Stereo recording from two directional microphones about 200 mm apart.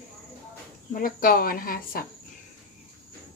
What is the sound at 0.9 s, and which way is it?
Speech, 45° left (ahead or behind).